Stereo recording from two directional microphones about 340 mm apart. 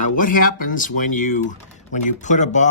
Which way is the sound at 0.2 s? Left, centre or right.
Left.